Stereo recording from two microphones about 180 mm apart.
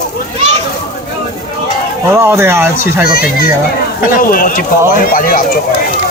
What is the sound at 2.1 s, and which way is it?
Speech, 15° right (ahead or behind).